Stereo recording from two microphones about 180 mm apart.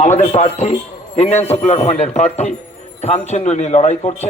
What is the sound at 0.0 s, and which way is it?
A man's voice, 40° left (ahead or behind).